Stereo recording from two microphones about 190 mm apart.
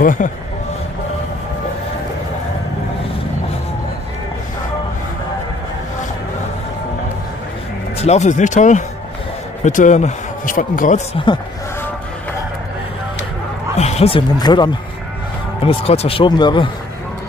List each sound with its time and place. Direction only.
0.0 s speech: 45° left (ahead or behind)
8.0 s speech: 35° left (ahead or behind)
13.7 s speech: 35° left (ahead or behind)